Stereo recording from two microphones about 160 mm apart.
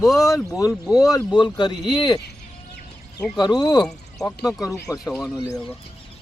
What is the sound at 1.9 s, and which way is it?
Speech, 25° left (ahead or behind).